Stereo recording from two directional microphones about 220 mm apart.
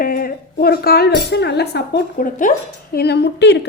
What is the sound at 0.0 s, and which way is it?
Speech, 40° left (ahead or behind).